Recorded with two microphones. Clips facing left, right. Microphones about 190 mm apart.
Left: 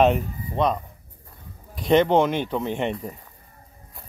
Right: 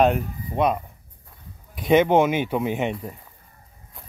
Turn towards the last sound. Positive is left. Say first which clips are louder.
# right 1 dB
turn(degrees=0)  # may be behind; listen again after turning